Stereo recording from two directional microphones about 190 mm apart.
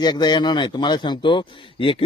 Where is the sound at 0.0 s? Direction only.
20° left (ahead or behind).